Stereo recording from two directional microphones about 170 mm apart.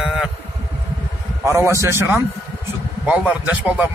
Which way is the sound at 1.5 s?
15° right (ahead or behind).